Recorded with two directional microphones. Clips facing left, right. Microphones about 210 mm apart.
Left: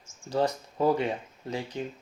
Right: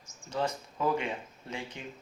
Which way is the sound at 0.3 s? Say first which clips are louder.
Left 6 dB; 35° left (ahead or behind).